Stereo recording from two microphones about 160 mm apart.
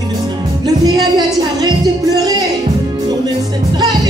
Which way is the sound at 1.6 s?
25° right (ahead or behind).